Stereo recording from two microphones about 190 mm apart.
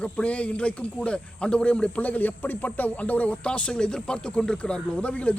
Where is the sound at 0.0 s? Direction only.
5° left (ahead or behind).